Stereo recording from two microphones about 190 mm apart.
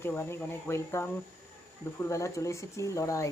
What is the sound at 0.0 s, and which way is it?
Speech, 15° left (ahead or behind).